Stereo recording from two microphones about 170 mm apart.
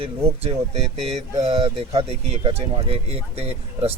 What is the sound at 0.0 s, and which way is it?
Speech, 35° right (ahead or behind).